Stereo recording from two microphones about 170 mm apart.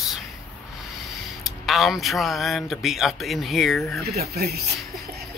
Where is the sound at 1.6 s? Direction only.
Centre (ahead or behind).